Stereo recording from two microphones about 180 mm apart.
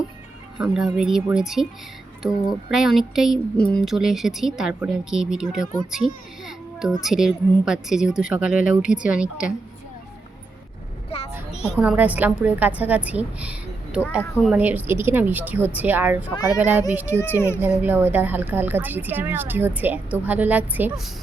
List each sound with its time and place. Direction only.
0.6 s speech: 5° right (ahead or behind)
11.1 s a sound: 35° left (ahead or behind)
11.8 s a woman's voice: 5° right (ahead or behind)
17.2 s a child's voice: 15° left (ahead or behind)
17.6 s a woman's voice: 10° right (ahead or behind)